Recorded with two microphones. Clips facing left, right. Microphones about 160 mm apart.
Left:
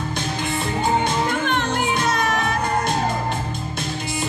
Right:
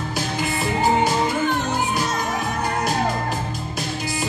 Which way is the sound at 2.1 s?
90° left.